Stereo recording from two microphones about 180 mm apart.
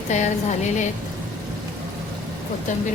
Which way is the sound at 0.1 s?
40° left (ahead or behind).